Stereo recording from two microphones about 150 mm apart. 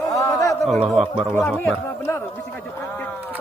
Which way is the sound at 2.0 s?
15° left (ahead or behind).